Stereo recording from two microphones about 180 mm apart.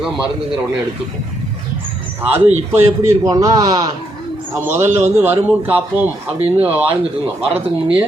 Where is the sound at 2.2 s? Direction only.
10° right (ahead or behind).